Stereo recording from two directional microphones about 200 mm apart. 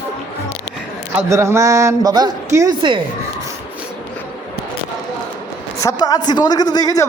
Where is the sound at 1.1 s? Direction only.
15° right (ahead or behind).